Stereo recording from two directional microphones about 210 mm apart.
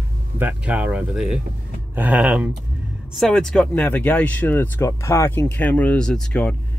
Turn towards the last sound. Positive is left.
turn(degrees=5)  # may be behind; listen again after turning